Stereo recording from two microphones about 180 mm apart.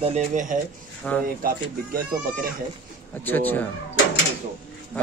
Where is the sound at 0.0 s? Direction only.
40° right (ahead or behind).